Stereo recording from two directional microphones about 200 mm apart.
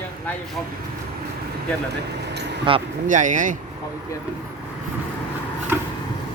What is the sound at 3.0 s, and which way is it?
Speech, 40° right (ahead or behind).